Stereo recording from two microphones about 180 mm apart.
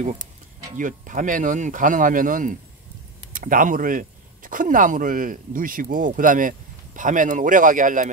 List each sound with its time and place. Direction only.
0.7 s speech: 45° right (ahead or behind)